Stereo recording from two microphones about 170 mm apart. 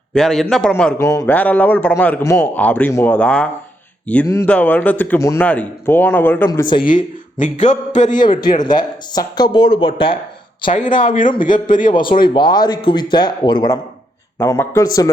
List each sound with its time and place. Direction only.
0.1 s a man's voice: centre (ahead or behind)
6.5 s speech: 25° left (ahead or behind)
6.8 s a man's voice: 50° left (ahead or behind)
8.2 s speech: 25° left (ahead or behind)
10.9 s a man's voice: 50° left (ahead or behind)
12.2 s speech: 25° left (ahead or behind)